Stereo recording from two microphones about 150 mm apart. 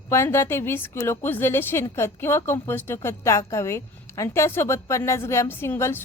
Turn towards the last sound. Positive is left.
turn(degrees=15)  # may be behind; listen again after turning